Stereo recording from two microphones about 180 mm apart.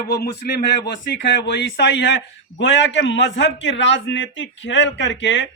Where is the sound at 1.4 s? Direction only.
75° left (ahead or behind).